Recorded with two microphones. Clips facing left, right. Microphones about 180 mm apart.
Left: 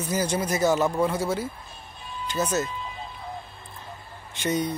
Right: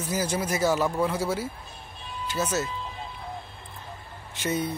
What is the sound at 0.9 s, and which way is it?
Speech, 10° left (ahead or behind).